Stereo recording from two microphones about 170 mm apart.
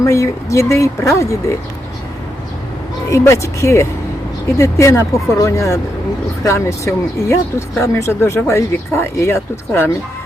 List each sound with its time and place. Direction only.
0.0 s speech: 15° left (ahead or behind)
3.1 s speech: 15° left (ahead or behind)